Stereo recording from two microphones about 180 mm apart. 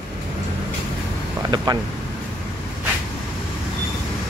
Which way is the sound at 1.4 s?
20° right (ahead or behind).